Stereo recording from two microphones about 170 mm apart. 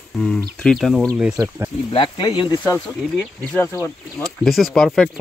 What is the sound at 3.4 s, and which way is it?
Speech, 15° left (ahead or behind).